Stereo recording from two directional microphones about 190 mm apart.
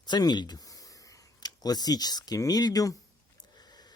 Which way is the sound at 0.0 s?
20° left (ahead or behind).